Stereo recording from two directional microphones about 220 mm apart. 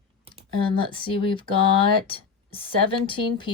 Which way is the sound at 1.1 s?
25° left (ahead or behind).